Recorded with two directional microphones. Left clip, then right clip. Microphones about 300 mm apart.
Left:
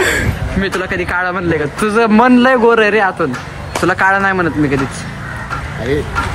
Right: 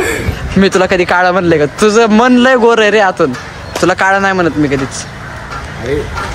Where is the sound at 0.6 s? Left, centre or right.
Centre.